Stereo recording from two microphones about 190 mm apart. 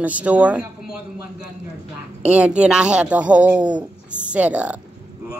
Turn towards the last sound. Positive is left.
turn(degrees=-5)  # may be behind; listen again after turning